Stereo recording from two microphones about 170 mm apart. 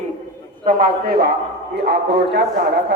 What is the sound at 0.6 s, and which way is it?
A man's voice, 55° right (ahead or behind).